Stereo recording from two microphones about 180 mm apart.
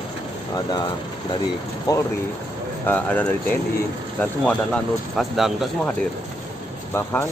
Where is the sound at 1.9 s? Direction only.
20° left (ahead or behind).